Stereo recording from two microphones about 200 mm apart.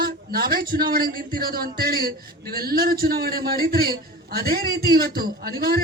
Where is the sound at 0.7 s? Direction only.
50° right (ahead or behind).